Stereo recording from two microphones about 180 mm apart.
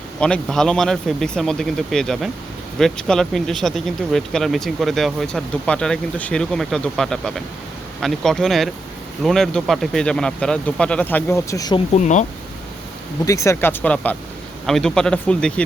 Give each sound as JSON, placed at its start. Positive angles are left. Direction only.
{"t": 0.2, "sound": "speech", "side_deg": 5}
{"t": 11.9, "sound": "speech", "side_deg": 40}
{"t": 13.2, "sound": "speech", "side_deg": 15}